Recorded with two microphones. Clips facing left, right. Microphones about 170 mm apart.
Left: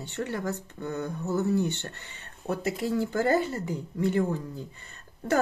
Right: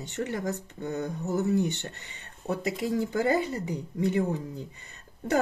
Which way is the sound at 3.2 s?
15° right (ahead or behind).